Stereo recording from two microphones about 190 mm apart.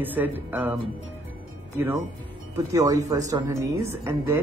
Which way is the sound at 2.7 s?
15° right (ahead or behind).